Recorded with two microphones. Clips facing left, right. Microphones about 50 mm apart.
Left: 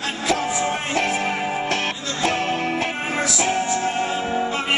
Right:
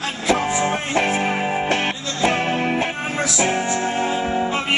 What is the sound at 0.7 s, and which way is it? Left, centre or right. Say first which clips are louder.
Music: right 2 dB; centre.